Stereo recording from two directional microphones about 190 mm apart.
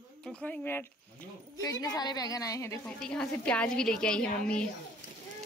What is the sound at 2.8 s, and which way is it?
A woman's voice, 5° left (ahead or behind).